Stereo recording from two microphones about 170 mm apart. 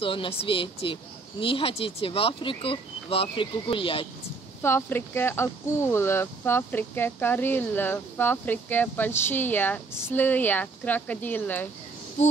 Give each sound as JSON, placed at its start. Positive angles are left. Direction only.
{"t": 0.0, "sound": "speech", "side_deg": 30}
{"t": 4.6, "sound": "speech", "side_deg": 15}